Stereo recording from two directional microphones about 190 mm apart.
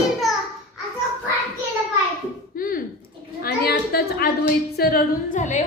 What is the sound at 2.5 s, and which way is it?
A woman's voice, 50° left (ahead or behind).